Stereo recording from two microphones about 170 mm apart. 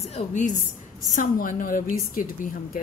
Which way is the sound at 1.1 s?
50° left (ahead or behind).